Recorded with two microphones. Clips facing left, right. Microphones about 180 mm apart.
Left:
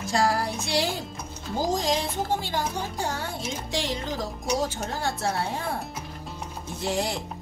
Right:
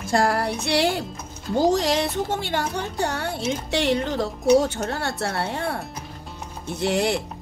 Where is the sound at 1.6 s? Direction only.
70° right (ahead or behind).